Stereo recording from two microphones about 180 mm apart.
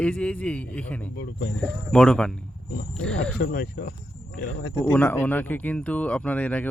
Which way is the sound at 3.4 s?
65° left (ahead or behind).